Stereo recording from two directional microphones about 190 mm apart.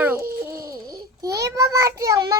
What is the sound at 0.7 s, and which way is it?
Babbling, 20° right (ahead or behind).